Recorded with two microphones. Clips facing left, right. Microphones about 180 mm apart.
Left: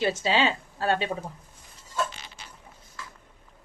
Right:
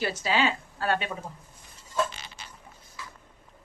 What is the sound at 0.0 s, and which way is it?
A woman's voice, 25° left (ahead or behind).